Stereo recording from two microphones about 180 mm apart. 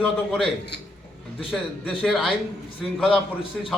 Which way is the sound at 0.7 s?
65° left (ahead or behind).